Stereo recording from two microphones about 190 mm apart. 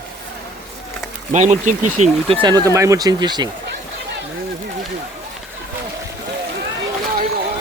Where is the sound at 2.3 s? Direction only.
25° right (ahead or behind).